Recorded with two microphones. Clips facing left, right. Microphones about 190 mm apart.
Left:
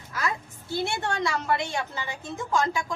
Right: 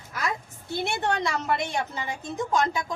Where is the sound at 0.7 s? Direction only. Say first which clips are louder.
Right 1 dB; 20° right (ahead or behind).